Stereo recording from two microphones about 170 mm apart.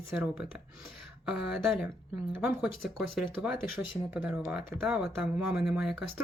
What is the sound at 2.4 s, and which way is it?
Speech, centre (ahead or behind).